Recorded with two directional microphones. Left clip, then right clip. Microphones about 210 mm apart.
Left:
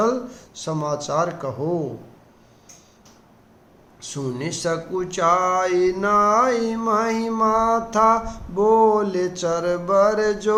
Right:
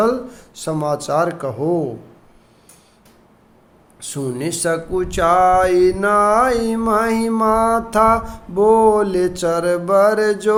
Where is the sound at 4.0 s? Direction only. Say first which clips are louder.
Right 4 dB; 35° right (ahead or behind).